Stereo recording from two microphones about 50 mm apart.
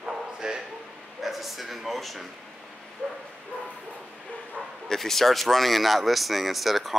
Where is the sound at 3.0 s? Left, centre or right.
Centre.